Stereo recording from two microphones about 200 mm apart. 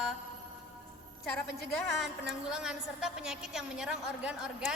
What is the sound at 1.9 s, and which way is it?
A woman's voice, centre (ahead or behind).